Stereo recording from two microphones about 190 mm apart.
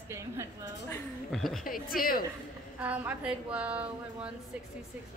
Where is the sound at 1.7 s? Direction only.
50° left (ahead or behind).